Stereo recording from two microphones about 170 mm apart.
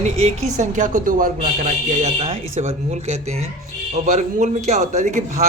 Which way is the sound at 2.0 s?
35° right (ahead or behind).